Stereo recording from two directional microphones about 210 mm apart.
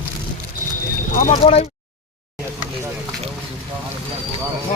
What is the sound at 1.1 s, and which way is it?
Speech, 40° left (ahead or behind).